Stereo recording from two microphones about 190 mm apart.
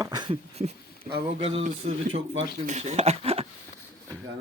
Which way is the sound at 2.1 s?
90° right.